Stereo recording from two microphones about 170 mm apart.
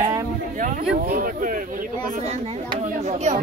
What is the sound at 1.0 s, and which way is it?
Speech, 55° right (ahead or behind).